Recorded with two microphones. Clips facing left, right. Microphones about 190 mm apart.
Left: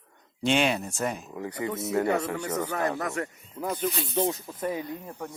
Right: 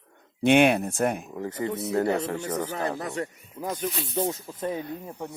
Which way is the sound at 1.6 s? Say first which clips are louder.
Right 1 dB; 35° right (ahead or behind).